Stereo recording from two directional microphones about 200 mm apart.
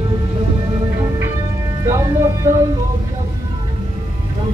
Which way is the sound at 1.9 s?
15° right (ahead or behind).